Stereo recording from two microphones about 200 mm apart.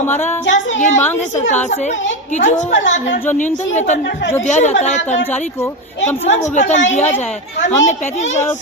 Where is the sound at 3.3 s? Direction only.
40° left (ahead or behind).